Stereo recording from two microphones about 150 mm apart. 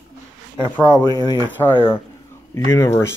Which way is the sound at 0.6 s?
35° left (ahead or behind).